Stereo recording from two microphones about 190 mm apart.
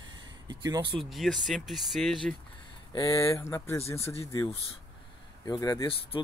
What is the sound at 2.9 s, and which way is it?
Speech, 15° left (ahead or behind).